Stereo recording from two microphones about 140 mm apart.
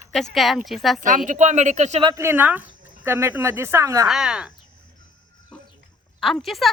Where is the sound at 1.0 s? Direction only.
65° right (ahead or behind).